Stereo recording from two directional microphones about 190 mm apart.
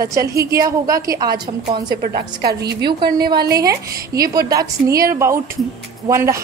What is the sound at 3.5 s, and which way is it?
Speech, 20° right (ahead or behind).